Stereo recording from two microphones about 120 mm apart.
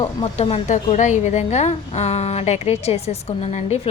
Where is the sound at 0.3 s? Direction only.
60° left (ahead or behind).